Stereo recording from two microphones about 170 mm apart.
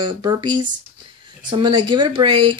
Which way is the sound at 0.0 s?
25° right (ahead or behind).